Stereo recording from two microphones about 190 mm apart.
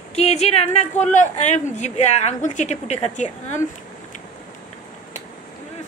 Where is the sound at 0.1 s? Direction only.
35° left (ahead or behind).